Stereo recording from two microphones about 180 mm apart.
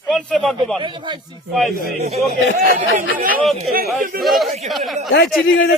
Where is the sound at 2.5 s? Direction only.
55° right (ahead or behind).